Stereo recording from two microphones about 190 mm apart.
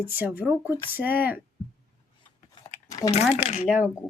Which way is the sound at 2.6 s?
20° left (ahead or behind).